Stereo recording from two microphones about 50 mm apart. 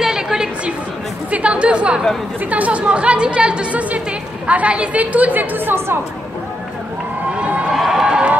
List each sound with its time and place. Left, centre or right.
0.0 s chatter: centre
1.3 s chatter: right
2.5 s speech: right
7.7 s a sound: centre